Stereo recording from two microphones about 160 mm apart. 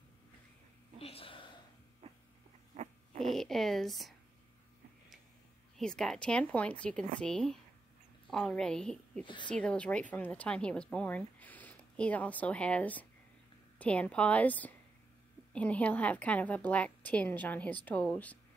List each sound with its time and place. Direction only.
0.9 s a sound: 35° left (ahead or behind)
2.0 s a sound: 40° right (ahead or behind)
3.2 s a woman's voice: centre (ahead or behind)
5.8 s a woman's voice: 5° left (ahead or behind)
9.2 s speech: 30° left (ahead or behind)
9.5 s a woman's voice: 5° left (ahead or behind)